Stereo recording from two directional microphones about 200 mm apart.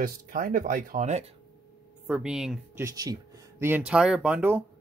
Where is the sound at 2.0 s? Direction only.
5° right (ahead or behind).